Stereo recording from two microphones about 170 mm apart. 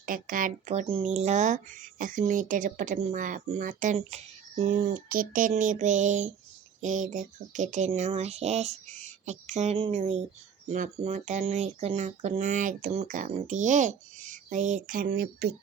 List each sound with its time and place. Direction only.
0.0 s speech: 55° right (ahead or behind)